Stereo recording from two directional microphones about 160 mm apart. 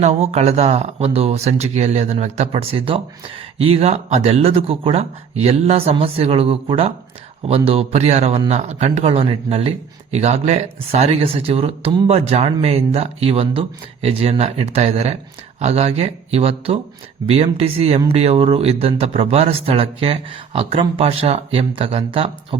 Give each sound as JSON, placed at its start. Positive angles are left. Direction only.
{"t": 0.0, "sound": "speech", "side_deg": -40}